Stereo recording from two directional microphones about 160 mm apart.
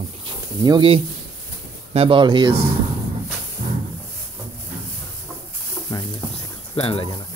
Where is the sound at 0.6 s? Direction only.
30° right (ahead or behind).